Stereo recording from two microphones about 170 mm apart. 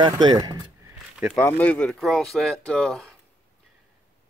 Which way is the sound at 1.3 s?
10° left (ahead or behind).